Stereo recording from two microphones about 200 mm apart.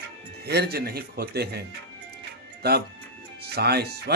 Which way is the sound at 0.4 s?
55° right (ahead or behind).